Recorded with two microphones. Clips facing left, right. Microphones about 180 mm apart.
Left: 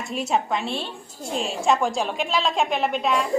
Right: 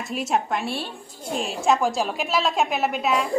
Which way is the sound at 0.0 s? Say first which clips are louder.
Even; centre (ahead or behind).